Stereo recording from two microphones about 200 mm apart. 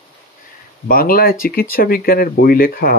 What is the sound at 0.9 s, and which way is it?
Speech, 45° left (ahead or behind).